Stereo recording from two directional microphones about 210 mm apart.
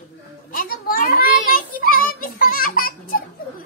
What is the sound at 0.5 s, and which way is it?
Child singing, 45° left (ahead or behind).